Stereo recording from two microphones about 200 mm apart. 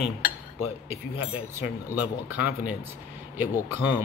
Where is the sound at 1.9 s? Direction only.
5° right (ahead or behind).